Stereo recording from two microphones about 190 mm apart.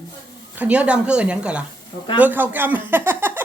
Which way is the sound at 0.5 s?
5° right (ahead or behind).